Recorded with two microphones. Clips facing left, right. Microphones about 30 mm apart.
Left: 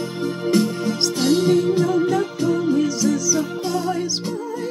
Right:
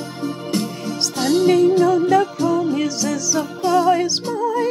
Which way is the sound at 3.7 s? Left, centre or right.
Right.